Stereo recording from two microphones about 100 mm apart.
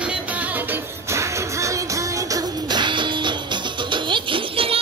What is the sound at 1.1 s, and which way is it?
Music, 30° right (ahead or behind).